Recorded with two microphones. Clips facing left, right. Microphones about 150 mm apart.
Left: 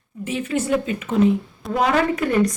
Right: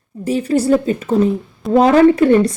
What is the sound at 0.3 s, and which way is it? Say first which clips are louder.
Speech: right 8 dB; 35° right (ahead or behind).